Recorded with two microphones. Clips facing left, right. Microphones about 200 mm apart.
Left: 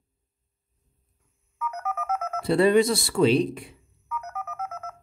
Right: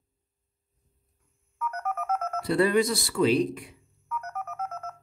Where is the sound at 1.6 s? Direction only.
5° left (ahead or behind).